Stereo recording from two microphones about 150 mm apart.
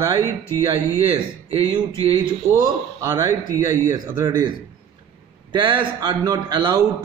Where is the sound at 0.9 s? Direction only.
40° right (ahead or behind).